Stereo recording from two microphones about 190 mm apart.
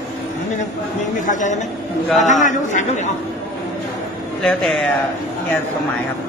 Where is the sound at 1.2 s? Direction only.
40° left (ahead or behind).